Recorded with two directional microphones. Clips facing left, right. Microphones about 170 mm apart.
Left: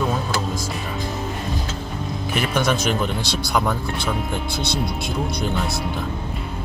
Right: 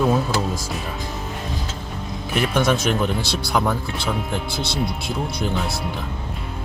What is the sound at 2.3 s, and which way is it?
Speech, centre (ahead or behind).